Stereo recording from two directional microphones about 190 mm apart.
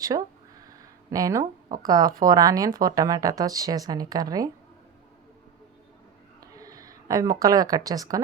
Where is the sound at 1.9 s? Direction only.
20° right (ahead or behind).